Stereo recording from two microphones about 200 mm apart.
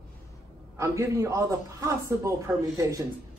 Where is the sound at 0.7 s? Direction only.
15° right (ahead or behind).